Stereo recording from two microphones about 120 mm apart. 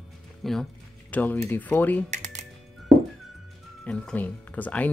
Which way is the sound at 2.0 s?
75° right (ahead or behind).